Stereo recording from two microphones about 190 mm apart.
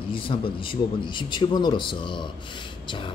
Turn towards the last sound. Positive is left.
turn(degrees=25)  # may be behind; listen again after turning